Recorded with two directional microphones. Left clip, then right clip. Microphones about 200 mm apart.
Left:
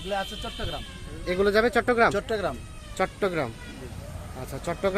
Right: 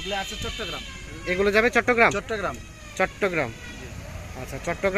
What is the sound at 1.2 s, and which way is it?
Speech, centre (ahead or behind).